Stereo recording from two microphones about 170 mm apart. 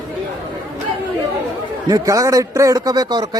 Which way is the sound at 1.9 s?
20° right (ahead or behind).